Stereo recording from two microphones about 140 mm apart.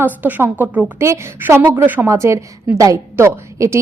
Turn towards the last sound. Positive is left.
turn(degrees=-20)  # may be behind; listen again after turning